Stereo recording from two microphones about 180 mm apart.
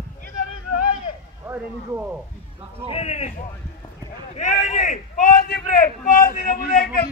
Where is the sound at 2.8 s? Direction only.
35° left (ahead or behind).